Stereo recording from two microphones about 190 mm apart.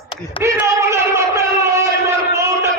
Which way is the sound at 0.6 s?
15° right (ahead or behind).